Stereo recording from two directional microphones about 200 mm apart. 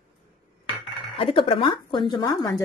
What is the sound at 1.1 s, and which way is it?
A woman's voice, 25° left (ahead or behind).